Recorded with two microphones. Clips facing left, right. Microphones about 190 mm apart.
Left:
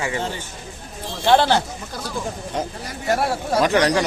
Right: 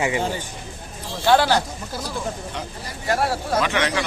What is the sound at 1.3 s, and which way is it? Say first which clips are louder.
Speech: left 1 dB; 25° left (ahead or behind).